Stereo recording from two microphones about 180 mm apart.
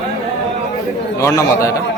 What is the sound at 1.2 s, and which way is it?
Speech, 15° left (ahead or behind).